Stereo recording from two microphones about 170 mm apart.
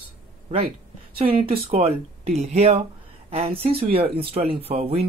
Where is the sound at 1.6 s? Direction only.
35° right (ahead or behind).